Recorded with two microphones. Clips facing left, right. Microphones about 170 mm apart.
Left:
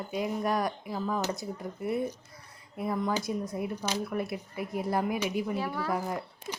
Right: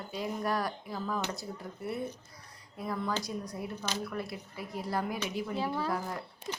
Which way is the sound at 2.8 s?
20° left (ahead or behind).